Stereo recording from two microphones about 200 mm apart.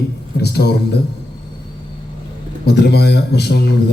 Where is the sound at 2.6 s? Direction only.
55° left (ahead or behind).